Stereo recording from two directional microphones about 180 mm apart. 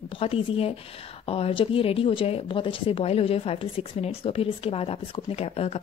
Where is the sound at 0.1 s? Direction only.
30° left (ahead or behind).